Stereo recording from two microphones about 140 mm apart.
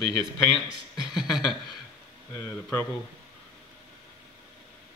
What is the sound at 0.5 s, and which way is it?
Speech, 5° right (ahead or behind).